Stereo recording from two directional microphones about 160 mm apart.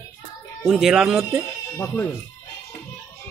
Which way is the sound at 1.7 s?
15° left (ahead or behind).